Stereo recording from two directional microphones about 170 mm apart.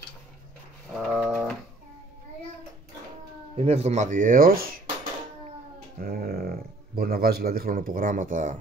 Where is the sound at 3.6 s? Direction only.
40° right (ahead or behind); by 4.8 s 60° right (ahead or behind).